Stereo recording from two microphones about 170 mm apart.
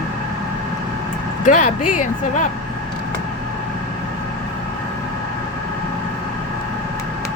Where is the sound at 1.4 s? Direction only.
50° left (ahead or behind).